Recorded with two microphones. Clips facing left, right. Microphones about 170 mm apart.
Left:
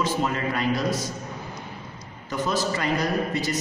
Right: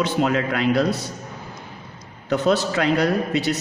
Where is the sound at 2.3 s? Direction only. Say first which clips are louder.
Right 6 dB; 65° right (ahead or behind).